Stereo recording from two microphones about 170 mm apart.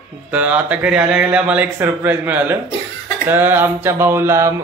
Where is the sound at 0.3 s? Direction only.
10° right (ahead or behind).